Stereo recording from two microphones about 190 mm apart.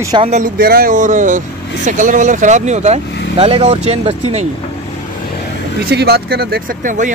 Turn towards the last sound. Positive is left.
turn(degrees=-45)  # may be behind; listen again after turning